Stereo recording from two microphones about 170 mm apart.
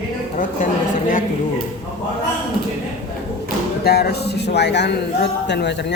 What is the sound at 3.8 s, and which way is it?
A man's voice, 70° left (ahead or behind).